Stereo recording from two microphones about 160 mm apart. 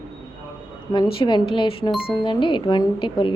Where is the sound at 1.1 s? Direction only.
30° left (ahead or behind).